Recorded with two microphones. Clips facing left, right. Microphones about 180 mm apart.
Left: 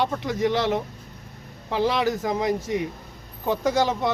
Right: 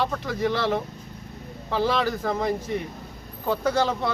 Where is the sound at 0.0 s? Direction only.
15° left (ahead or behind).